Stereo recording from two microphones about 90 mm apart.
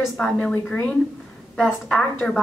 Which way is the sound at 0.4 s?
20° left (ahead or behind).